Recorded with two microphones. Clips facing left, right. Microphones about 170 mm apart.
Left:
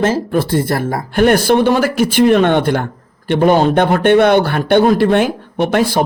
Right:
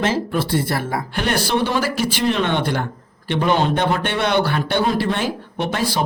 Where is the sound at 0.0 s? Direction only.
45° left (ahead or behind).